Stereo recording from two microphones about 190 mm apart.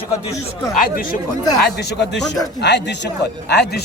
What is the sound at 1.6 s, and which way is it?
Speech, 60° left (ahead or behind).